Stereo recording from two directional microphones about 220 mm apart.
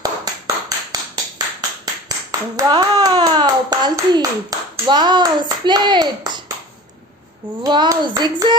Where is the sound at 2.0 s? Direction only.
15° right (ahead or behind).